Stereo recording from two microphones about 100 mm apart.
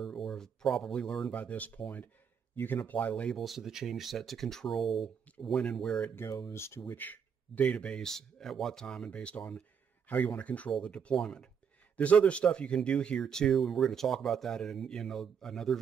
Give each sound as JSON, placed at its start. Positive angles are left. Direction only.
{"t": 0.0, "sound": "speech", "side_deg": 5}
{"t": 3.3, "sound": "speech", "side_deg": 0}
{"t": 6.5, "sound": "speech", "side_deg": 25}